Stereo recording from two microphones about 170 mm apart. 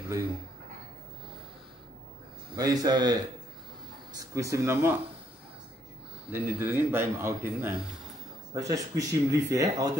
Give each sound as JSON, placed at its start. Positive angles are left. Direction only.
{"t": 2.5, "sound": "speech", "side_deg": -20}
{"t": 6.3, "sound": "a man's voice", "side_deg": -10}